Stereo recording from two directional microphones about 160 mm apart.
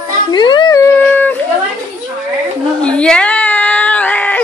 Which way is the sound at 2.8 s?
5° left (ahead or behind).